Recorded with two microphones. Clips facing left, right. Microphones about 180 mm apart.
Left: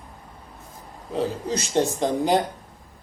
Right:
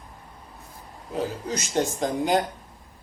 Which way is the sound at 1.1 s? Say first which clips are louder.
Left 3 dB; 30° left (ahead or behind).